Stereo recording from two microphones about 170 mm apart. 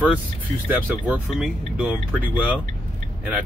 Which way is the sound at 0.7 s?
10° right (ahead or behind).